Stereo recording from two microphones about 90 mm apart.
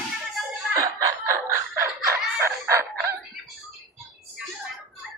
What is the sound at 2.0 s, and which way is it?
Chicken, 30° right (ahead or behind).